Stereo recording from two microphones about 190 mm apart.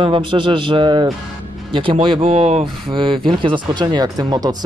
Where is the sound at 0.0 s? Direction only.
25° right (ahead or behind).